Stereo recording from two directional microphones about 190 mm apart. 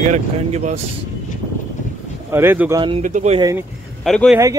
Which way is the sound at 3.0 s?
40° right (ahead or behind).